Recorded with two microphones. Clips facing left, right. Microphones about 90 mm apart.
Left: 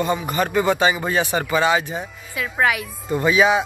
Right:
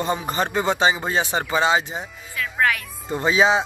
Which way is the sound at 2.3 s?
15° left (ahead or behind).